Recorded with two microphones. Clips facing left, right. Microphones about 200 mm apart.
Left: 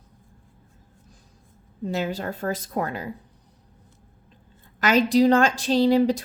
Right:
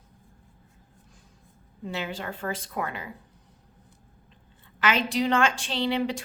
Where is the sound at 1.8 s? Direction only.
40° left (ahead or behind).